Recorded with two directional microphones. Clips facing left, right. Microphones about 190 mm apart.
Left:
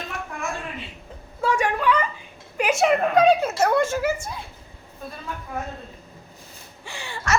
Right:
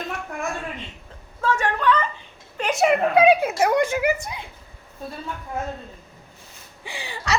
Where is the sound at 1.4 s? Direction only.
10° left (ahead or behind).